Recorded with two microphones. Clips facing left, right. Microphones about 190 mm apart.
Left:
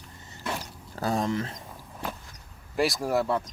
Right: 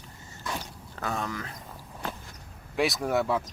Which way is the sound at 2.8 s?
Centre (ahead or behind).